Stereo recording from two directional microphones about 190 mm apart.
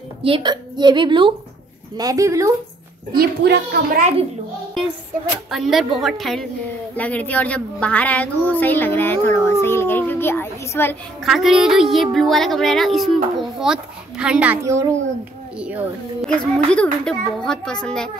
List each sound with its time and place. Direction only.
0.2 s a woman's voice: 25° right (ahead or behind)
3.2 s a child's voice: 55° right (ahead or behind)
5.5 s a woman's voice: centre (ahead or behind)
11.2 s a woman's voice: centre (ahead or behind)
16.3 s a woman's voice: 5° left (ahead or behind)